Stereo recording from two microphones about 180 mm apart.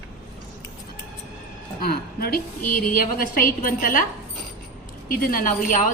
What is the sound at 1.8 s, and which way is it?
A woman's voice, 55° left (ahead or behind).